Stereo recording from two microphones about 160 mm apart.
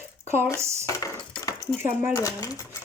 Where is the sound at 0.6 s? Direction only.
15° right (ahead or behind).